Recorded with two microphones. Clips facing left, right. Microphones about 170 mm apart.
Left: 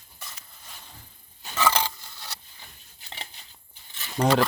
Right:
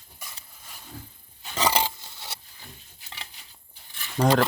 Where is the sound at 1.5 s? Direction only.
20° right (ahead or behind).